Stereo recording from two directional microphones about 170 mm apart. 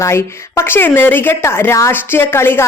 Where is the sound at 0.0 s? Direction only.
15° left (ahead or behind).